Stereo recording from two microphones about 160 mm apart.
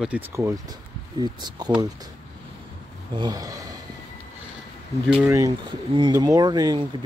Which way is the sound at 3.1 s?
25° right (ahead or behind).